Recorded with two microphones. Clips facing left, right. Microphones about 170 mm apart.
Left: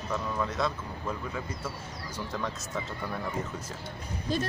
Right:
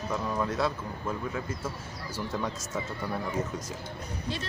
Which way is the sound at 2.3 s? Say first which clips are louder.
Right 1 dB; 10° right (ahead or behind).